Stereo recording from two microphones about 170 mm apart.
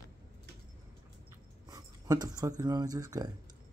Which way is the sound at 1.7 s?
20° right (ahead or behind).